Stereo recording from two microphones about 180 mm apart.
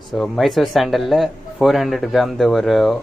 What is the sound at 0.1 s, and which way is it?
Speech, centre (ahead or behind).